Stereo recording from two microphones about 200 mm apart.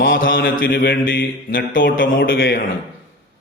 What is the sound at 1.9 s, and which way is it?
Speech, 45° left (ahead or behind).